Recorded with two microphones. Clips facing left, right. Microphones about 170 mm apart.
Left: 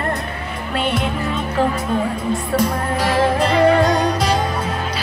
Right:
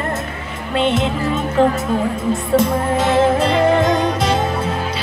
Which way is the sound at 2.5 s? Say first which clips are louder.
Right 5 dB; 25° right (ahead or behind).